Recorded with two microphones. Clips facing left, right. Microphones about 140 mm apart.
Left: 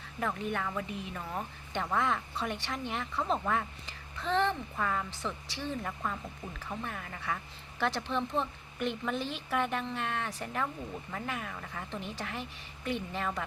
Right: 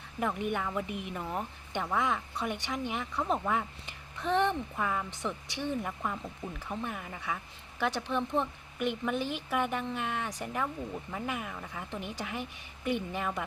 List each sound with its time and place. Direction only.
0.2 s speech: 15° right (ahead or behind)